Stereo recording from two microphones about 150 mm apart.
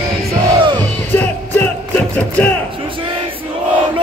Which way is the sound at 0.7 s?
10° left (ahead or behind).